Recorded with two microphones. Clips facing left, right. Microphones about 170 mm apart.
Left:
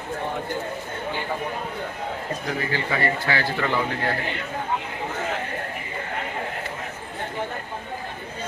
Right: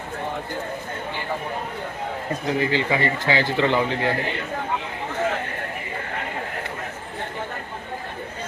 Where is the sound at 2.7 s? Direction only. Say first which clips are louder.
Right 2 dB; 20° right (ahead or behind).